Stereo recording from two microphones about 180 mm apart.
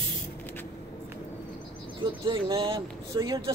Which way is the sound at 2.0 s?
25° right (ahead or behind).